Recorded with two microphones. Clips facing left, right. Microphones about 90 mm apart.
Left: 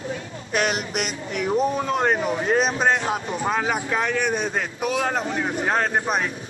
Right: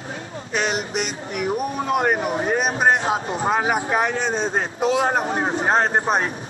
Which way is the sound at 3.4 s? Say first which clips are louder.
Right 3 dB; 25° right (ahead or behind).